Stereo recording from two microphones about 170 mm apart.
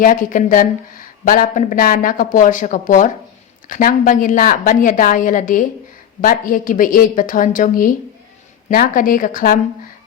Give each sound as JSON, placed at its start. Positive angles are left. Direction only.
{"t": 0.0, "sound": "a woman's voice", "side_deg": 55}